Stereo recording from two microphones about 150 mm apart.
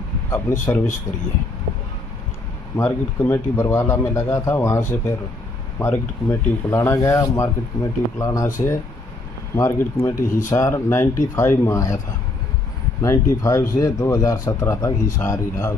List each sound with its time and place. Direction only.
0.3 s speech: 15° left (ahead or behind)
2.7 s speech: 15° left (ahead or behind)
9.6 s speech: 15° left (ahead or behind)
13.0 s speech: 20° left (ahead or behind)